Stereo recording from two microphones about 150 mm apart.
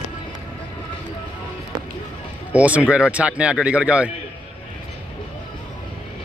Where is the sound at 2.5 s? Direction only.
10° right (ahead or behind).